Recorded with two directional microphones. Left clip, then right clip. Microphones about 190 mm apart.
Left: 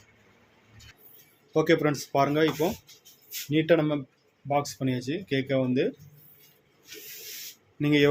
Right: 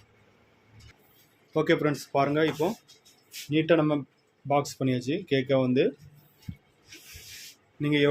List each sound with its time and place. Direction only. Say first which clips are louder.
1.5 s speech: left 2 dB; centre (ahead or behind)
4.4 s speech: right 1 dB; 20° right (ahead or behind)
7.8 s speech: left 2 dB; 10° left (ahead or behind)